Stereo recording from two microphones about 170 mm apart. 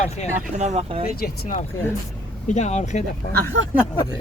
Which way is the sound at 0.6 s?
40° right (ahead or behind).